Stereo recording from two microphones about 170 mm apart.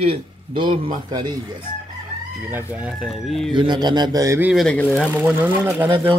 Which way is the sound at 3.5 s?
25° right (ahead or behind).